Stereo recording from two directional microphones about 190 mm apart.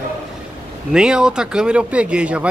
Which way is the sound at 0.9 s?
5° right (ahead or behind).